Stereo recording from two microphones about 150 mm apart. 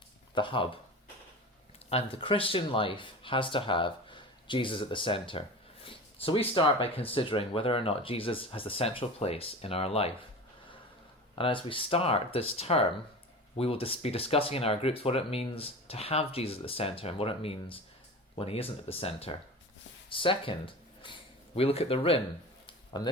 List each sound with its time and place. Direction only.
0.3 s speech: 35° left (ahead or behind)
1.9 s speech: 40° left (ahead or behind)
11.3 s speech: 35° left (ahead or behind)
22.6 s a sound: 30° left (ahead or behind)